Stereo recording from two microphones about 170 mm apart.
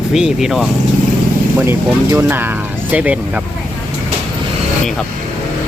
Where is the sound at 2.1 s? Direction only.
15° right (ahead or behind).